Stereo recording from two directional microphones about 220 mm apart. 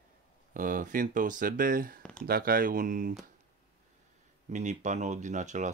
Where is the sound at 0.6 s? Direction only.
40° right (ahead or behind).